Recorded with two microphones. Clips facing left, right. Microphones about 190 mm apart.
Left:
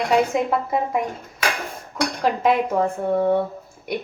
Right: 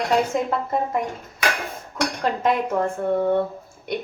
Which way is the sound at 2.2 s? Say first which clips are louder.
Left 3 dB; 5° left (ahead or behind).